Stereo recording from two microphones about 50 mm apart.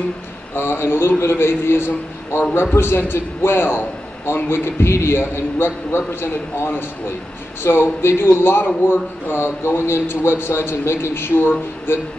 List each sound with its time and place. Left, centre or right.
0.6 s a man's voice: left